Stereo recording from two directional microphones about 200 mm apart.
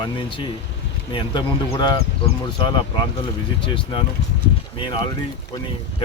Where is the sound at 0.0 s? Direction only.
25° left (ahead or behind).